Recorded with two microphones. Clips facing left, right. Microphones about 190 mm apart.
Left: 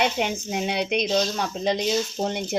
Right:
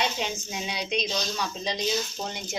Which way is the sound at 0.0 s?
60° left (ahead or behind).